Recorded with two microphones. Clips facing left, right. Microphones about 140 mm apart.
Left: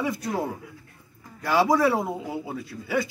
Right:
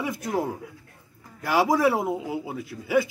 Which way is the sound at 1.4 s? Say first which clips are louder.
Even; 15° right (ahead or behind).